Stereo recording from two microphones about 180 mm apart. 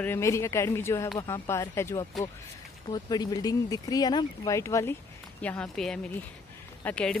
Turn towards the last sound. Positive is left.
turn(degrees=5)  # may be behind; listen again after turning